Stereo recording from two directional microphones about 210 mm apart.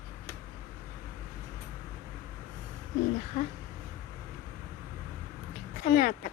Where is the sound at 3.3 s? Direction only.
35° left (ahead or behind).